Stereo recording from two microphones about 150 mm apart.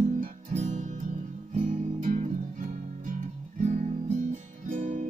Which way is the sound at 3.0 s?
60° right (ahead or behind).